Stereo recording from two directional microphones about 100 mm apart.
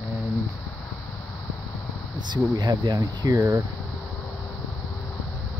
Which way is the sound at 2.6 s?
45° right (ahead or behind).